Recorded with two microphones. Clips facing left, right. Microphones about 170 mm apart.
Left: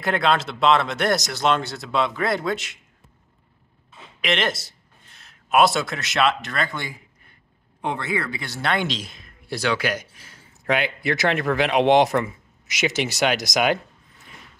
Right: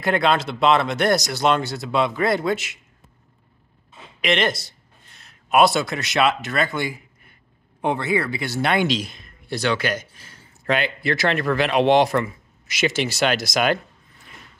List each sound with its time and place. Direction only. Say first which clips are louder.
0.0 s speech: right 2 dB; centre (ahead or behind)
4.2 s speech: right 3 dB; centre (ahead or behind)
8.8 s speech: right 6 dB; centre (ahead or behind); by 13.7 s 15° left (ahead or behind)